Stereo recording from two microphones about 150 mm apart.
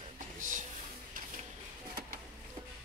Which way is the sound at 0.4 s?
60° right (ahead or behind).